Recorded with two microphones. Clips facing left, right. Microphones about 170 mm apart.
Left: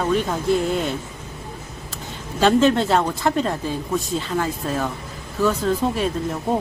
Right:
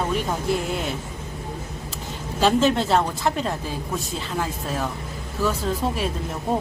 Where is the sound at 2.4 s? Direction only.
Centre (ahead or behind).